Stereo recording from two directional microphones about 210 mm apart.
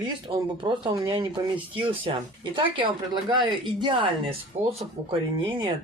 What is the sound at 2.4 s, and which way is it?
Speech, 20° right (ahead or behind).